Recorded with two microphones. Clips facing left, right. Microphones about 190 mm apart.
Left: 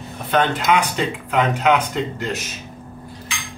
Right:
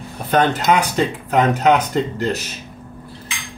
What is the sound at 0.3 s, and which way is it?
Speech, 45° right (ahead or behind).